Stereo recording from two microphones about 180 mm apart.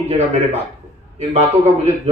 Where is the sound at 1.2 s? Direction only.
35° right (ahead or behind).